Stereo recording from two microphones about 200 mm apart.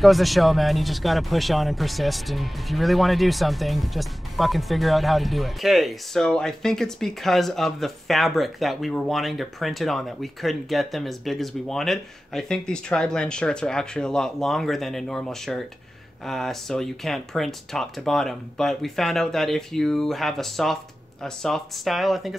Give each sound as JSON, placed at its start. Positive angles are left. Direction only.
{"t": 0.0, "sound": "speech", "side_deg": 0}